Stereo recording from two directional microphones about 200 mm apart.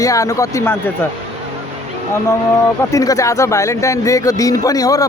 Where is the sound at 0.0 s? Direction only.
15° left (ahead or behind).